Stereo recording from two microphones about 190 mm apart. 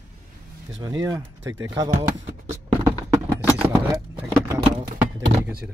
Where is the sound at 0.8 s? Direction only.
20° right (ahead or behind).